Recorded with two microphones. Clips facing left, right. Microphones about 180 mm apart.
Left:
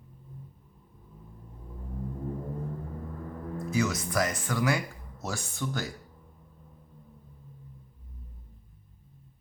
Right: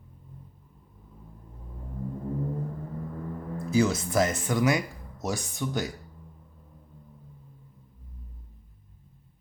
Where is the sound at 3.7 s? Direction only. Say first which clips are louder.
Right 5 dB; 30° right (ahead or behind).